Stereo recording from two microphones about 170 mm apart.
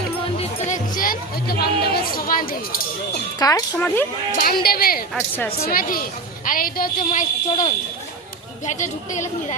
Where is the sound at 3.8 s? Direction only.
10° left (ahead or behind).